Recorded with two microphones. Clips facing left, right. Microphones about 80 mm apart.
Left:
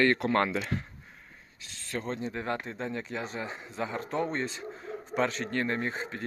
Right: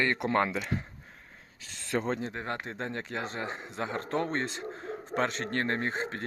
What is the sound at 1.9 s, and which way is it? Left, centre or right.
Speech, right.